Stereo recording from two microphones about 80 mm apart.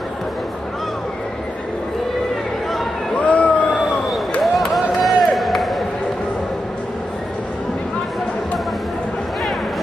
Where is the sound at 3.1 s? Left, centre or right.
Centre.